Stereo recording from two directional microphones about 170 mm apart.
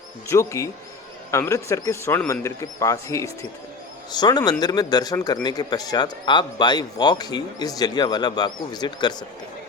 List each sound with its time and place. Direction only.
0.3 s a man's voice: 15° left (ahead or behind)